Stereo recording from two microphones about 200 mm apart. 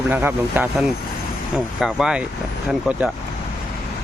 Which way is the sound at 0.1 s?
10° right (ahead or behind).